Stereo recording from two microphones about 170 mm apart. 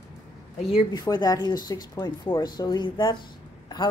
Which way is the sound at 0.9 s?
25° left (ahead or behind).